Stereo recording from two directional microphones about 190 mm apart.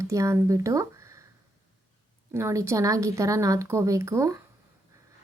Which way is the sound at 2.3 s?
15° right (ahead or behind).